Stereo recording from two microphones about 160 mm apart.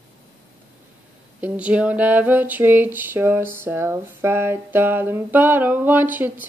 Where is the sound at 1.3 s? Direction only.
10° right (ahead or behind).